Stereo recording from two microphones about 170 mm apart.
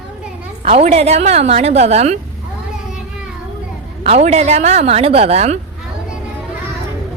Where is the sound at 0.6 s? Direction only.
35° right (ahead or behind).